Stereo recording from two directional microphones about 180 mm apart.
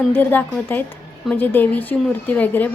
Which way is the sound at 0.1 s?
10° left (ahead or behind).